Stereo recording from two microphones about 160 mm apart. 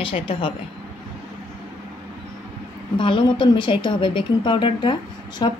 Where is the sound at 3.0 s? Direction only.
30° left (ahead or behind).